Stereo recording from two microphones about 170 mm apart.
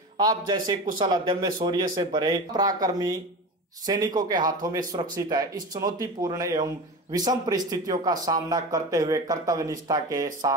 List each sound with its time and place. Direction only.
0.2 s speech: 25° right (ahead or behind)